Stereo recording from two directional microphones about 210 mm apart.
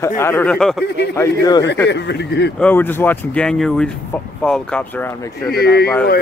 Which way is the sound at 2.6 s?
10° left (ahead or behind).